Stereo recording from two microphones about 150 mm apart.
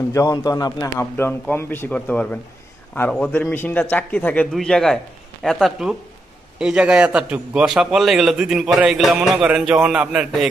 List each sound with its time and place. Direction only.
0.1 s a man's voice: 25° left (ahead or behind); by 10.5 s 5° right (ahead or behind)